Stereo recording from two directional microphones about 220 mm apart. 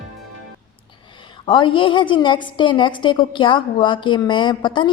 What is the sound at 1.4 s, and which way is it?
A woman's voice, 20° left (ahead or behind).